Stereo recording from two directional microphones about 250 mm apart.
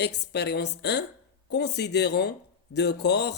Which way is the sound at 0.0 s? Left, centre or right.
Left.